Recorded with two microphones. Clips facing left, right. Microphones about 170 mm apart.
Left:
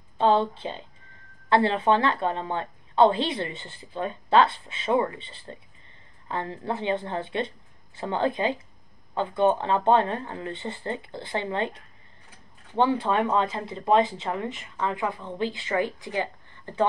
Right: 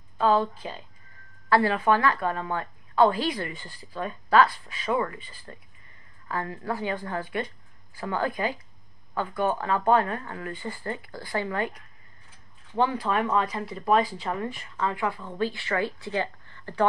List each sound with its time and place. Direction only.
0.2 s a woman's voice: 25° left (ahead or behind)